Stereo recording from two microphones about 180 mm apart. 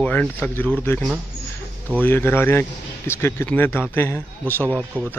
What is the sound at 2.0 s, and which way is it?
Speech, 10° left (ahead or behind).